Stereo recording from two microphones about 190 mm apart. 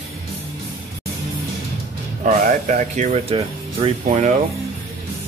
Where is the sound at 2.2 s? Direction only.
40° right (ahead or behind).